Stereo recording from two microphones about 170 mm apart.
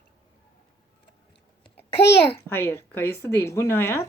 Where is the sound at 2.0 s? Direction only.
85° left.